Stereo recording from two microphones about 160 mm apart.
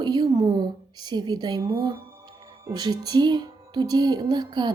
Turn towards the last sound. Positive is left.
turn(degrees=-25)  # may be behind; listen again after turning